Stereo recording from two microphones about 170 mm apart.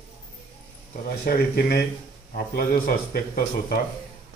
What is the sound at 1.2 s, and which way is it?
Speech, 60° left (ahead or behind).